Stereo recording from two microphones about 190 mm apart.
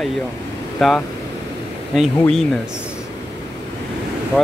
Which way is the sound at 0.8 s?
Centre (ahead or behind).